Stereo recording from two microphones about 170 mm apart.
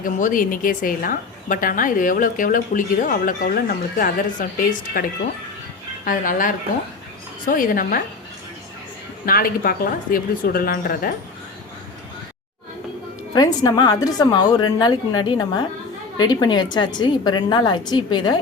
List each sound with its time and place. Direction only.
0.0 s a woman's voice: 55° left (ahead or behind)
9.2 s a woman's voice: 60° left (ahead or behind)
13.3 s a woman's voice: 25° left (ahead or behind)